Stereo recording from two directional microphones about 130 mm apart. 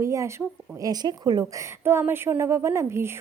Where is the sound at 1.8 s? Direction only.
20° right (ahead or behind).